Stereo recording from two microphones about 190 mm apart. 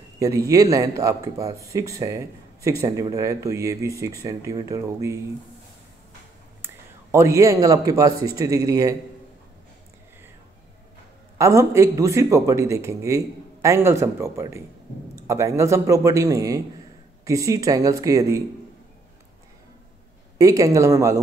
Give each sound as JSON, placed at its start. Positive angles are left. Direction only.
{"t": 0.5, "sound": "speech", "side_deg": -20}
{"t": 6.6, "sound": "a man's voice", "side_deg": -15}
{"t": 11.3, "sound": "speech", "side_deg": -15}
{"t": 20.3, "sound": "speech", "side_deg": -20}